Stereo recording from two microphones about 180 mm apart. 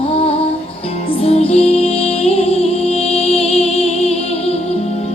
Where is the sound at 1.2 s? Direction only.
35° left (ahead or behind).